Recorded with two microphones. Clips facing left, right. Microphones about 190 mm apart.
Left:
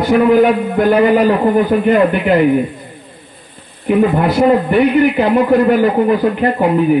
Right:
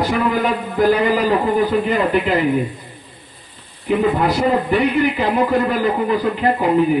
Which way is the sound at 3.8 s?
55° left (ahead or behind).